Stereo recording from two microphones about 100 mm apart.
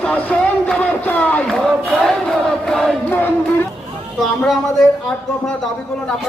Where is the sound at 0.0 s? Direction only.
15° left (ahead or behind).